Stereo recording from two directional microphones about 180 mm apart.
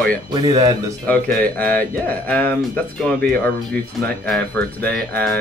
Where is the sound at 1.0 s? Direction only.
10° left (ahead or behind).